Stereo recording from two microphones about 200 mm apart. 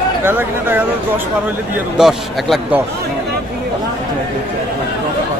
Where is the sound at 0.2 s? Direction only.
10° right (ahead or behind).